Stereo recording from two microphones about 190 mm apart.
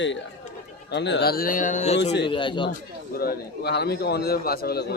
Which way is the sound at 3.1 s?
55° left (ahead or behind).